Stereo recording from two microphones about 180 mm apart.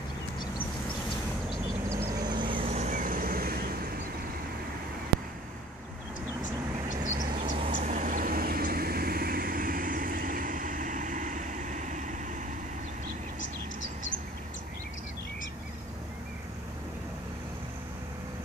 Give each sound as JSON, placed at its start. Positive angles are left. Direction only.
{"t": 1.9, "sound": "vehicle", "side_deg": -20}
{"t": 6.9, "sound": "vehicle", "side_deg": -50}